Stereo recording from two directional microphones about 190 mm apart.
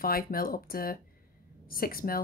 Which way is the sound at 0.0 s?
50° left (ahead or behind).